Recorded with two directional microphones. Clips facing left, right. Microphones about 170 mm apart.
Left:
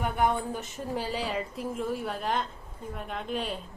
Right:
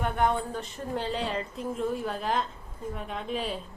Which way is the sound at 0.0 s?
10° left (ahead or behind).